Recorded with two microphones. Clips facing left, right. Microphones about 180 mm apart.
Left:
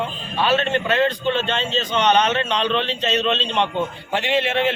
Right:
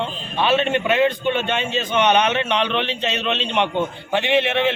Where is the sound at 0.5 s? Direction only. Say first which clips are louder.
Right 2 dB; 15° right (ahead or behind).